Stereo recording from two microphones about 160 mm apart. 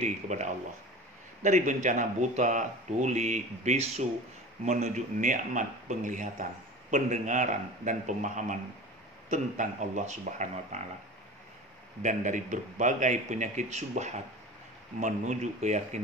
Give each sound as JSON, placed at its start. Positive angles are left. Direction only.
{"t": 0.0, "sound": "speech", "side_deg": -50}
{"t": 12.0, "sound": "speech", "side_deg": -50}